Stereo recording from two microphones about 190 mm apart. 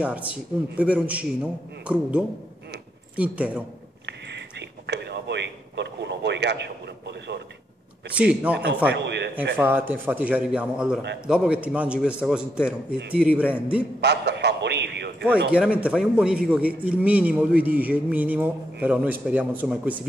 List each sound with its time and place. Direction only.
0.0 s a man's voice: 5° right (ahead or behind)
4.0 s a sound: 65° right (ahead or behind)
8.1 s a man's voice: 5° right (ahead or behind)
8.5 s a man's voice: 65° right (ahead or behind)
9.6 s a man's voice: 10° right (ahead or behind)
14.0 s a sound: 65° right (ahead or behind)
15.5 s a man's voice: 5° right (ahead or behind)